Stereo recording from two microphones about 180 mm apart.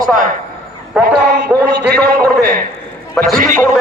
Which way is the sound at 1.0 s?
60° right (ahead or behind).